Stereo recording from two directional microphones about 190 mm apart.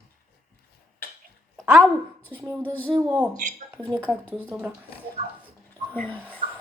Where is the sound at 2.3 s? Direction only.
10° right (ahead or behind).